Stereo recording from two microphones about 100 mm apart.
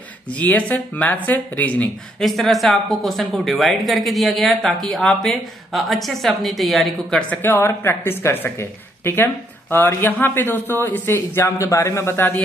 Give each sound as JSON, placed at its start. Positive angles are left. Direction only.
{"t": 0.4, "sound": "speech", "side_deg": 15}
{"t": 2.2, "sound": "speech", "side_deg": 0}
{"t": 7.4, "sound": "speech", "side_deg": 25}